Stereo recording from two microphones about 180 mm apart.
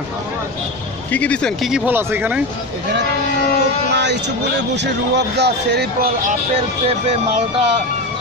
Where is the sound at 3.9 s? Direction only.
70° right (ahead or behind).